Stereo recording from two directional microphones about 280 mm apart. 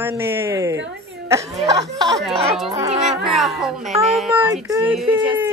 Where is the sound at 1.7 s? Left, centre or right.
Centre.